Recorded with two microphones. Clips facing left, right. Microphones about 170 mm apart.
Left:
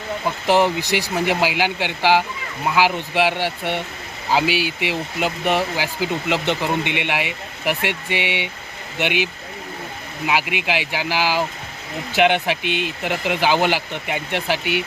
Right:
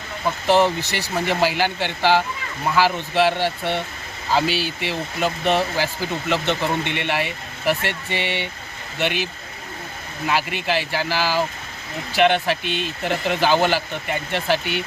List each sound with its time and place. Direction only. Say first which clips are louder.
0.4 s speech: even; 15° left (ahead or behind)